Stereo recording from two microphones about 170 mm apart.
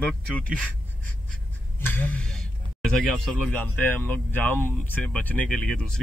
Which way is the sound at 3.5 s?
10° left (ahead or behind).